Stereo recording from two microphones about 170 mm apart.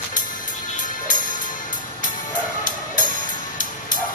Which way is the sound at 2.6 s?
50° left (ahead or behind).